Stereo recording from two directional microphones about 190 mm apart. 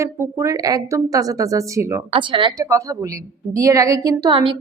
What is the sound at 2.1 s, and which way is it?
A woman's voice, 25° right (ahead or behind).